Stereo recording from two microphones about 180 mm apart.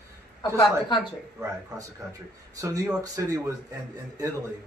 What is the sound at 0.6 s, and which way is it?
Speech, 25° left (ahead or behind).